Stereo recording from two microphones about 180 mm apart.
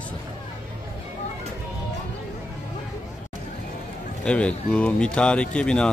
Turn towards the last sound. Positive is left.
turn(degrees=5)  # may be behind; listen again after turning